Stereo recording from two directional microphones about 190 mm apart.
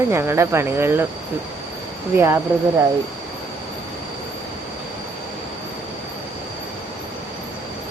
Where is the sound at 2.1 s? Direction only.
10° right (ahead or behind).